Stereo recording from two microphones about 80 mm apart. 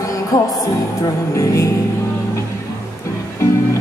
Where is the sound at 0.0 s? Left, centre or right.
Left.